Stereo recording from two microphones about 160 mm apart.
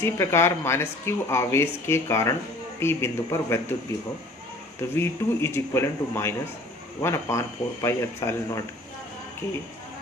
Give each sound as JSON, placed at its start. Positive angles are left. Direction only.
{"t": 0.0, "sound": "speech", "side_deg": 15}
{"t": 4.9, "sound": "speech", "side_deg": 15}